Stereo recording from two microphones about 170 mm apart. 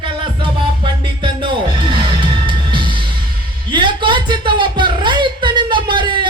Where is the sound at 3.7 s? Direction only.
30° right (ahead or behind).